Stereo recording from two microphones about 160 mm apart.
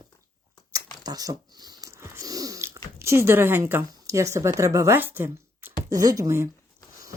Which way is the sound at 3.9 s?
20° right (ahead or behind).